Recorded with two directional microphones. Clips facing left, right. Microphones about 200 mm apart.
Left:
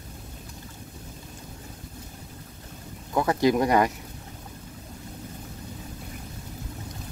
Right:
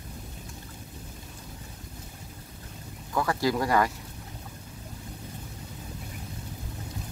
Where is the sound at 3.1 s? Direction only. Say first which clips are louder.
Left 5 dB; 20° left (ahead or behind).